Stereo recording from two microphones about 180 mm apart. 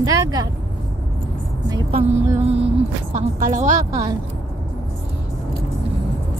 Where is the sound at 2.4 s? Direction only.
35° right (ahead or behind).